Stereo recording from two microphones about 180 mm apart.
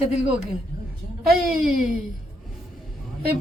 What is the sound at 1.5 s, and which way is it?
Speech, 5° right (ahead or behind).